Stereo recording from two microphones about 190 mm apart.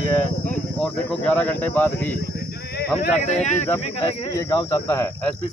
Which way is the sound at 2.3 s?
60° left (ahead or behind).